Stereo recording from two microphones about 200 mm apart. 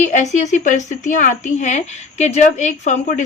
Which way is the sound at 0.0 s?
35° left (ahead or behind).